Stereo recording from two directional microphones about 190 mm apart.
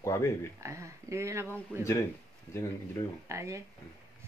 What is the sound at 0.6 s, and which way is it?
Speech, 15° right (ahead or behind).